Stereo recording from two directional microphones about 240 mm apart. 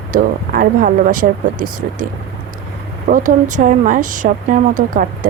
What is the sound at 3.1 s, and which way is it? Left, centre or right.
A woman's voice, right.